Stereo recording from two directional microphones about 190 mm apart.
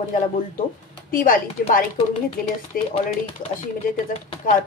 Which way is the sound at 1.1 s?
45° left (ahead or behind).